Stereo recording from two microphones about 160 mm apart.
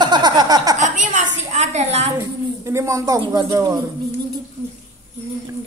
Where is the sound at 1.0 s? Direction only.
50° right (ahead or behind).